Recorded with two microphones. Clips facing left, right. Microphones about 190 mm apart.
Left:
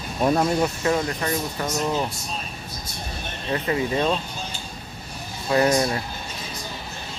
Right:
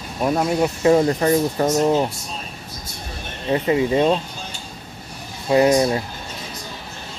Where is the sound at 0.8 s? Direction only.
30° right (ahead or behind).